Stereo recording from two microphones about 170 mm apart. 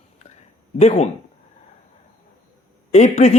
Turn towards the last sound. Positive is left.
turn(degrees=40)  # may be behind; listen again after turning